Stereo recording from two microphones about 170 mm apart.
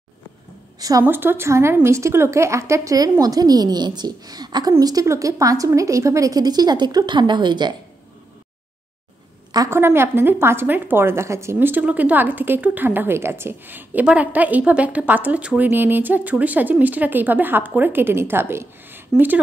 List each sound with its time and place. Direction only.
0.7 s a woman's voice: 20° right (ahead or behind)
9.5 s a woman's voice: 20° right (ahead or behind)